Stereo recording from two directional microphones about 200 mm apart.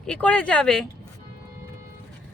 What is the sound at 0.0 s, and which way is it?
Speech, 5° left (ahead or behind).